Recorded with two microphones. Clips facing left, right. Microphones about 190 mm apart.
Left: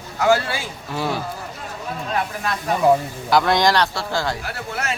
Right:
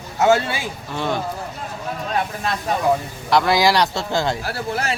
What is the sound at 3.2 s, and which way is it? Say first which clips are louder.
Speech: right 1 dB; centre (ahead or behind).